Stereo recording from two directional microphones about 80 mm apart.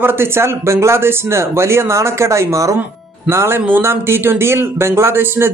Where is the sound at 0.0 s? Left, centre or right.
Right.